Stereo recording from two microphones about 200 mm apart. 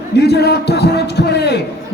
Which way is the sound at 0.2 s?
55° left (ahead or behind).